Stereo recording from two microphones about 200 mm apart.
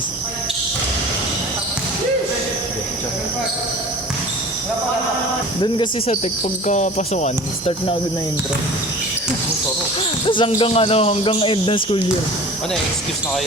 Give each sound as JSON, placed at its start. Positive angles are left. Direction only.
{"t": 5.6, "sound": "speech", "side_deg": 25}
{"t": 6.7, "sound": "speech", "side_deg": 35}
{"t": 10.2, "sound": "speech", "side_deg": 25}